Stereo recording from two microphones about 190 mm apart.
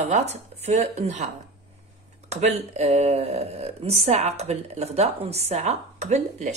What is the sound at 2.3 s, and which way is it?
A woman's voice, 35° right (ahead or behind).